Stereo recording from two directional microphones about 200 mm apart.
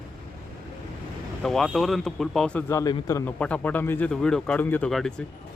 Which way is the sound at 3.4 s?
5° left (ahead or behind).